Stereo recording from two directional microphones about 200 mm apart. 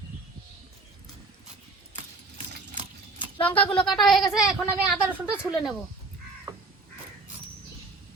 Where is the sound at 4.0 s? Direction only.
Centre (ahead or behind).